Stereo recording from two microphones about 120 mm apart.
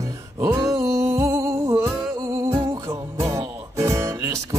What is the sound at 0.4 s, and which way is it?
Music, 25° right (ahead or behind).